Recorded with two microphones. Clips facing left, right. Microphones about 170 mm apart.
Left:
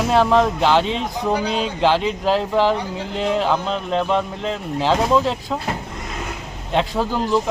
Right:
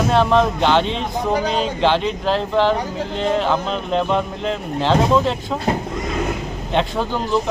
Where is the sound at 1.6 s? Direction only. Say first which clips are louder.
Even; 5° left (ahead or behind).